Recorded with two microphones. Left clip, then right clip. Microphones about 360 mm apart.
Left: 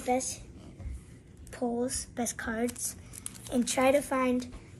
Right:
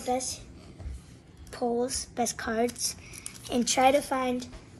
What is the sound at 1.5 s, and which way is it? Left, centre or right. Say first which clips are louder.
A woman's voice: right 4 dB; right.